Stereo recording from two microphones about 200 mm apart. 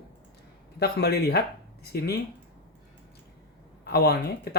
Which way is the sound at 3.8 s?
55° left (ahead or behind).